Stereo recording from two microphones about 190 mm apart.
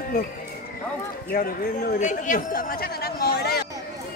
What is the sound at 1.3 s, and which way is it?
A man's voice, 50° left (ahead or behind).